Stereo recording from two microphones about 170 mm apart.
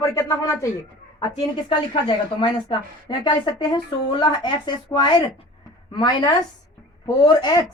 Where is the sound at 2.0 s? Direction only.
25° left (ahead or behind).